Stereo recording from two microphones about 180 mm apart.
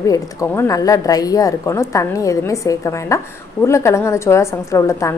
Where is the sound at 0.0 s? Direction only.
20° left (ahead or behind).